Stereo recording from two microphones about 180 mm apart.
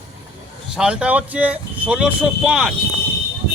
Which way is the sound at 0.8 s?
5° right (ahead or behind).